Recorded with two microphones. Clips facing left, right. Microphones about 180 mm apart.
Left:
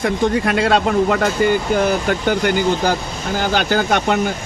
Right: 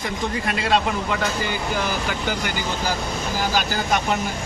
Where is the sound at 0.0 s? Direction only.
60° left (ahead or behind).